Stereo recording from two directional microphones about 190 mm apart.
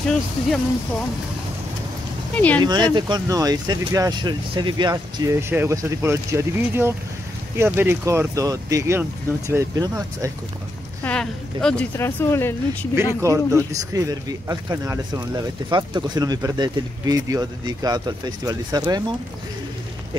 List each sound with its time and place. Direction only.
2.3 s a woman's voice: 5° left (ahead or behind)
2.6 s speech: 25° right (ahead or behind)
11.1 s a woman's voice: 5° left (ahead or behind)
12.9 s speech: 15° right (ahead or behind)